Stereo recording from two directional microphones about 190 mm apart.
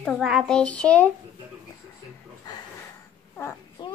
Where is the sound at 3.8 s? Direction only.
25° left (ahead or behind).